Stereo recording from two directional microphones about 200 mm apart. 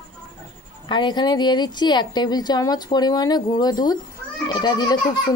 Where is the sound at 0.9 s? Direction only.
20° left (ahead or behind).